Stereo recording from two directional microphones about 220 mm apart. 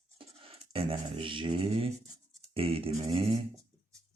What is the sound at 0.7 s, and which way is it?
Speech, 25° right (ahead or behind).